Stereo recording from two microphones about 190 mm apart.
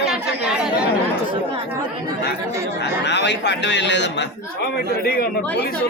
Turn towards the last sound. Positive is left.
turn(degrees=55)  # may be behind; listen again after turning